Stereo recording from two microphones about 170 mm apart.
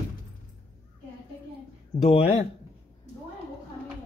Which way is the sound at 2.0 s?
40° left (ahead or behind).